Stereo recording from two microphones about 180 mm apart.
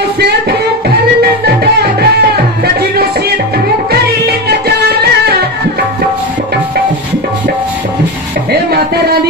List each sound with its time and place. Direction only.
0.2 s music: 60° right (ahead or behind)
8.5 s music: 60° right (ahead or behind)